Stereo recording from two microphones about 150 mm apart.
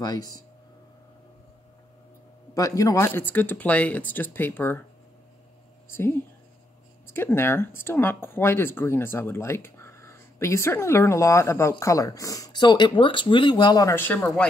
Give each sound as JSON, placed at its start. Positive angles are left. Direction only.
{"t": 0.0, "sound": "speech", "side_deg": 25}
{"t": 2.5, "sound": "speech", "side_deg": 20}
{"t": 5.9, "sound": "speech", "side_deg": 15}